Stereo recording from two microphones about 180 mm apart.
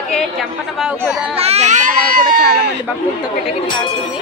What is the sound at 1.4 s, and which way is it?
Speech, 35° right (ahead or behind).